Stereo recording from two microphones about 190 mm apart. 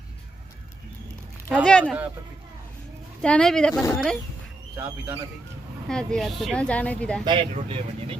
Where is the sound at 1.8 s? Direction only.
5° right (ahead or behind).